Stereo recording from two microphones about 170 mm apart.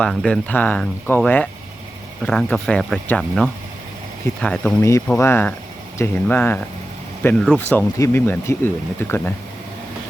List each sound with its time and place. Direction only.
0.0 s speech: 5° left (ahead or behind)
4.8 s speech: 15° left (ahead or behind)